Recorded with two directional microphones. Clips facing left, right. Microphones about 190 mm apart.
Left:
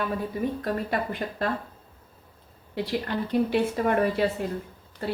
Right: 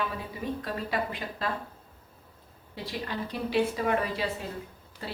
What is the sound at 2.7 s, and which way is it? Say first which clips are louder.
A woman's voice: left 7 dB; 60° left (ahead or behind).